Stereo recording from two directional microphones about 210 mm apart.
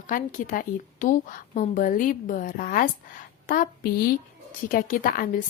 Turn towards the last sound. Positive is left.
turn(degrees=40)  # may be behind; listen again after turning